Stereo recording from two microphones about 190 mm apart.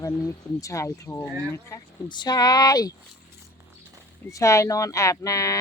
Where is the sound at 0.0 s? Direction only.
15° left (ahead or behind).